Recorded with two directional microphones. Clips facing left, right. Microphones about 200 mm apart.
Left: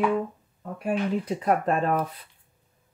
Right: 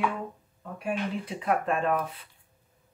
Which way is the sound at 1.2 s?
40° left (ahead or behind).